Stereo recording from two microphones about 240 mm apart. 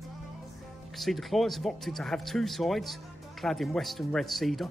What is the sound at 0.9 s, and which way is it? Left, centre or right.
Speech, centre.